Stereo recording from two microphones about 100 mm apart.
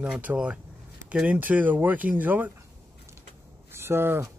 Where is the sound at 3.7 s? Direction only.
25° right (ahead or behind).